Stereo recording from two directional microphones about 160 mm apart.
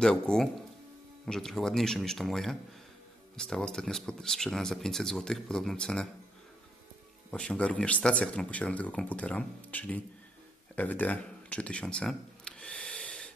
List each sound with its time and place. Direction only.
0.0 s speech: 5° left (ahead or behind)
7.2 s speech: 5° left (ahead or behind)
10.8 s cash register: 10° left (ahead or behind)